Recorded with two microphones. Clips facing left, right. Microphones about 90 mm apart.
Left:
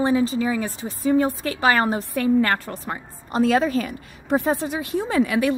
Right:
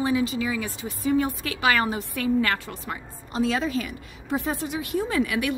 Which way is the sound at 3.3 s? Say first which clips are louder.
Left 6 dB; 50° left (ahead or behind).